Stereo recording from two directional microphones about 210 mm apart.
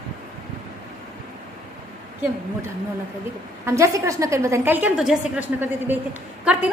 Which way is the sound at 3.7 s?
15° right (ahead or behind).